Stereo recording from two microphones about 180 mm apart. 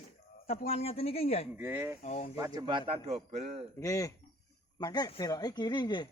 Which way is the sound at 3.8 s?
20° left (ahead or behind).